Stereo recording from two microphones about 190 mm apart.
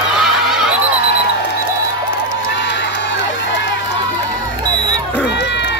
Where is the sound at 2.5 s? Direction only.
65° left (ahead or behind).